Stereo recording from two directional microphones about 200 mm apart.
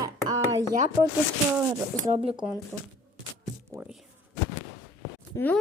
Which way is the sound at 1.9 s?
5° left (ahead or behind).